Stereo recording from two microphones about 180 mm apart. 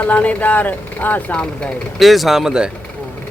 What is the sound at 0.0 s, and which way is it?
Speech, 10° left (ahead or behind).